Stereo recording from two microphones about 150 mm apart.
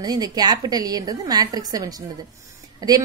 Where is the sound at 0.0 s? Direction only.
25° right (ahead or behind).